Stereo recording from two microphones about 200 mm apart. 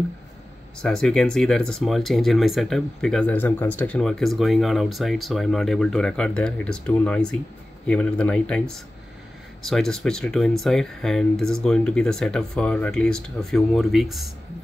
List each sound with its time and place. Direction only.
0.7 s speech: 5° left (ahead or behind)